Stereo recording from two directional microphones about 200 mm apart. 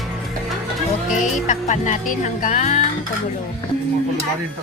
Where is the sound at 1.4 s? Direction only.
40° left (ahead or behind).